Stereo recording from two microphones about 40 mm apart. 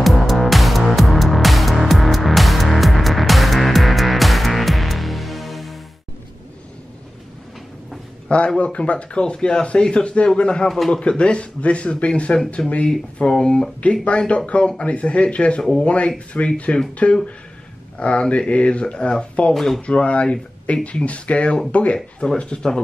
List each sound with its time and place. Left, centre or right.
0.0 s music: centre
8.5 s speech: left
12.9 s speech: centre
14.0 s speech: left
14.6 s speech: left
19.5 s speech: centre
19.9 s speech: left